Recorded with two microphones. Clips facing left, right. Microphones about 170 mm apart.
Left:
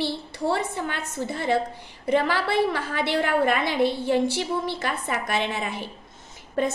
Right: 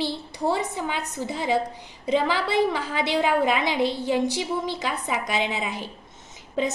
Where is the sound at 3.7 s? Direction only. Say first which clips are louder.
Left 1 dB; 55° left (ahead or behind).